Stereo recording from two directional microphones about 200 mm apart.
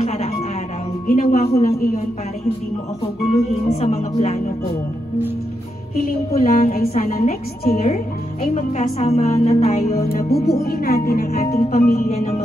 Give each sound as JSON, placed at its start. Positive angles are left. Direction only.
{"t": 0.0, "sound": "music", "side_deg": 30}
{"t": 1.0, "sound": "a woman's voice", "side_deg": 40}
{"t": 3.8, "sound": "a woman's voice", "side_deg": 35}
{"t": 6.0, "sound": "a woman's voice", "side_deg": 45}
{"t": 10.0, "sound": "a woman's voice", "side_deg": 50}